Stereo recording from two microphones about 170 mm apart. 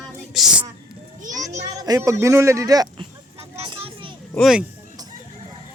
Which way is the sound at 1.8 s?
20° right (ahead or behind).